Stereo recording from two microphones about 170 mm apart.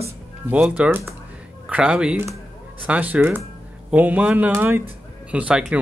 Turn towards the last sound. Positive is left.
turn(degrees=-5)  # may be behind; listen again after turning